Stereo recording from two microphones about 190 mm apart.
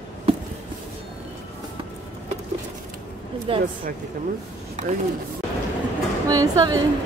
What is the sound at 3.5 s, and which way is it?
Speech, 30° right (ahead or behind).